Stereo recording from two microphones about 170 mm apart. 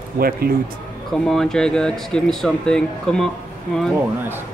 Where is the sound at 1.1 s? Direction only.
5° left (ahead or behind).